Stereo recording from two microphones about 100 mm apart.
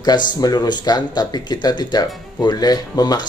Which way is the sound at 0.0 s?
45° left (ahead or behind).